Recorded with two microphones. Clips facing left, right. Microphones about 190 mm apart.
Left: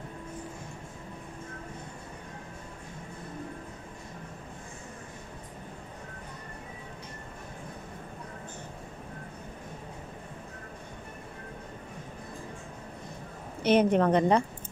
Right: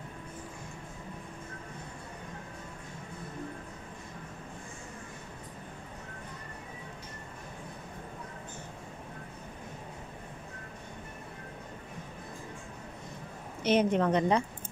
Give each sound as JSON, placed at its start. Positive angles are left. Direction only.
{"t": 13.7, "sound": "a woman's voice", "side_deg": 55}